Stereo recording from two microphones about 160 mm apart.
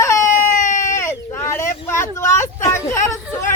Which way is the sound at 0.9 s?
15° left (ahead or behind).